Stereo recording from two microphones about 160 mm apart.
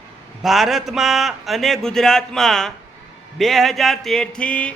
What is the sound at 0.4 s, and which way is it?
A man's voice, centre (ahead or behind).